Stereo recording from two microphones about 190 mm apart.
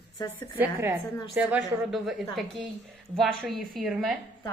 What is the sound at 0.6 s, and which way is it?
A woman's voice, 10° right (ahead or behind).